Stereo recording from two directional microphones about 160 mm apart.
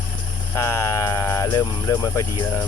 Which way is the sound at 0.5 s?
20° left (ahead or behind).